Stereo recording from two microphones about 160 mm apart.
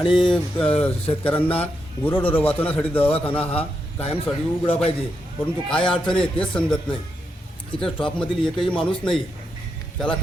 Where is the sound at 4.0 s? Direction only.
35° left (ahead or behind).